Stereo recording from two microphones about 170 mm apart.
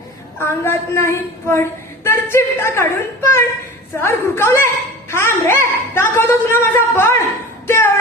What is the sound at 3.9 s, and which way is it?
A woman's voice, 15° left (ahead or behind).